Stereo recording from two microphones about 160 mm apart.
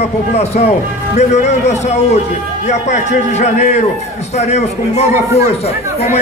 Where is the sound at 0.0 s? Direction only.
40° left (ahead or behind).